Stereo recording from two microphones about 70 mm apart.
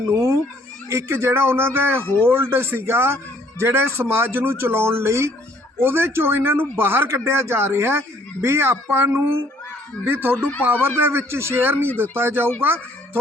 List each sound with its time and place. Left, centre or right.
0.9 s speech: right
2.0 s speech: centre
2.3 s speech: right